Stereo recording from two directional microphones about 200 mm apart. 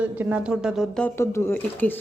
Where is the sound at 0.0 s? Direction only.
5° right (ahead or behind).